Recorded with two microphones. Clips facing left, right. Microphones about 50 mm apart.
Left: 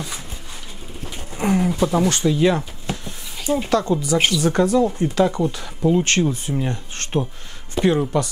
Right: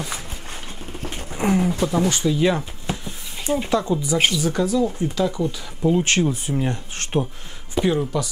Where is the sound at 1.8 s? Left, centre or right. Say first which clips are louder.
Left 2 dB; centre.